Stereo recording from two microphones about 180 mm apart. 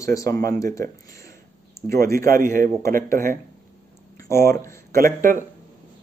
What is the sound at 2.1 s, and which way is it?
A man's voice, 50° right (ahead or behind).